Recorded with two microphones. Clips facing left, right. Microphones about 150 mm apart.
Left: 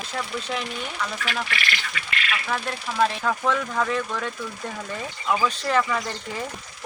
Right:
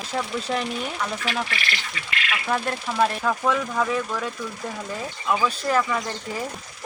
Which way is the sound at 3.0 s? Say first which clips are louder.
Even; 5° right (ahead or behind).